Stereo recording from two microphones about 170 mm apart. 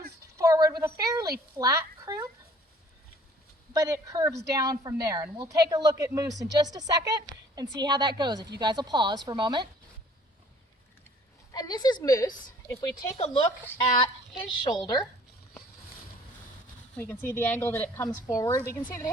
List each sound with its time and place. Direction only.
0.3 s a sound: 20° right (ahead or behind)
1.5 s speech: 15° right (ahead or behind)
3.7 s a woman's voice: 20° right (ahead or behind)
11.5 s a woman's voice: 25° left (ahead or behind)
14.0 s a woman's voice: 25° left (ahead or behind)
17.0 s a woman's voice: 10° left (ahead or behind)